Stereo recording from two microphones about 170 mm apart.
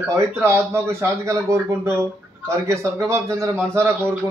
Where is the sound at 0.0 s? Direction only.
15° right (ahead or behind).